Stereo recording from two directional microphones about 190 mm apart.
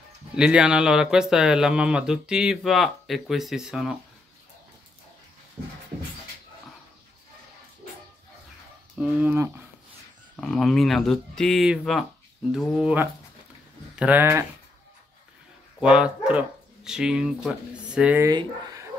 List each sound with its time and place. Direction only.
0.4 s speech: 5° right (ahead or behind)
8.9 s speech: 5° right (ahead or behind)
10.3 s speech: 5° left (ahead or behind)
15.8 s speech: 5° right (ahead or behind)
18.3 s speech: 20° right (ahead or behind)